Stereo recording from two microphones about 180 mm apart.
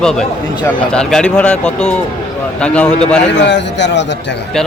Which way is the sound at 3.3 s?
80° left.